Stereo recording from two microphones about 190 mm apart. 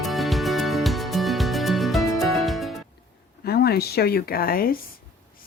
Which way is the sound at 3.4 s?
55° left (ahead or behind).